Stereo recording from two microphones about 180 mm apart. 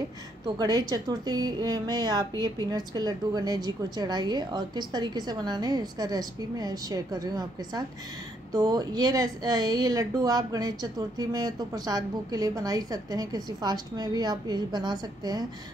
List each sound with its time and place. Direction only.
0.6 s a woman's voice: 20° right (ahead or behind)